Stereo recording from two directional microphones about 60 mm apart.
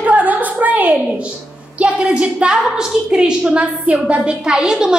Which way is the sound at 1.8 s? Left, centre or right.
Right.